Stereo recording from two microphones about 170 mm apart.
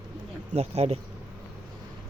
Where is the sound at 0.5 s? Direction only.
40° right (ahead or behind).